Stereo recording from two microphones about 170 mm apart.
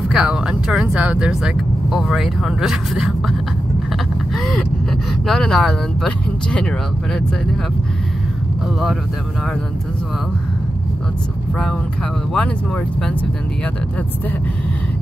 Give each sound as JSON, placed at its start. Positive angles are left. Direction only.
{"t": 0.1, "sound": "speech", "side_deg": -5}
{"t": 5.2, "sound": "speech", "side_deg": 0}
{"t": 12.4, "sound": "speech", "side_deg": 5}